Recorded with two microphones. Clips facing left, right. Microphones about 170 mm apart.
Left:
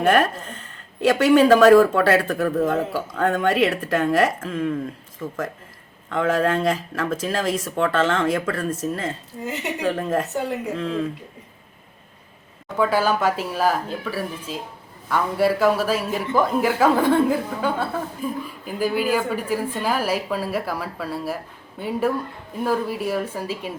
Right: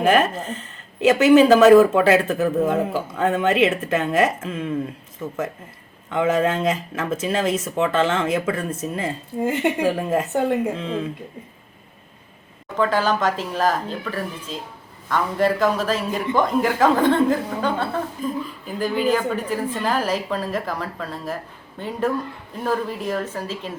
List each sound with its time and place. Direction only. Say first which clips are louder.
0.0 s a woman's voice: right 1 dB; 5° right (ahead or behind)
9.4 s speech: right 8 dB; 55° right (ahead or behind)
9.8 s a woman's voice: right 2 dB; 5° right (ahead or behind)
10.3 s speech: right 5 dB; 55° right (ahead or behind)
10.8 s speech: left 2 dB; centre (ahead or behind)
12.7 s a woman's voice: even; 10° left (ahead or behind)